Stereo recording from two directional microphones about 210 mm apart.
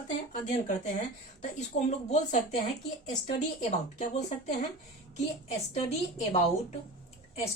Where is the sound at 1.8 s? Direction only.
35° left (ahead or behind).